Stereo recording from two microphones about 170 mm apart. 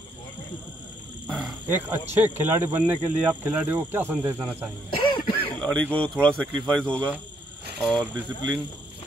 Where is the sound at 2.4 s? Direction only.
10° right (ahead or behind).